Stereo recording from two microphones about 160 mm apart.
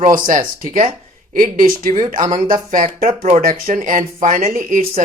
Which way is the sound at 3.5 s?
60° right (ahead or behind).